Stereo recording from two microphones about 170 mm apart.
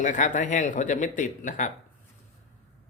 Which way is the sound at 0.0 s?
50° left (ahead or behind).